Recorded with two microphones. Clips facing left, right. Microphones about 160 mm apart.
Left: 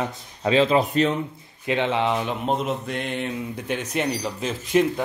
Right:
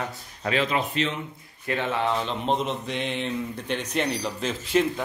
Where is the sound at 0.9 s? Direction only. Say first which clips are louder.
Left 6 dB; 45° left (ahead or behind).